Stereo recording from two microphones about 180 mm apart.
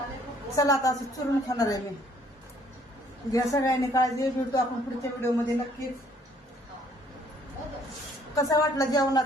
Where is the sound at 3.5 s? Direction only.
20° left (ahead or behind).